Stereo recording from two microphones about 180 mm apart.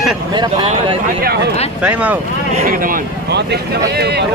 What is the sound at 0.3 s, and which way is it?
Speech, 30° right (ahead or behind).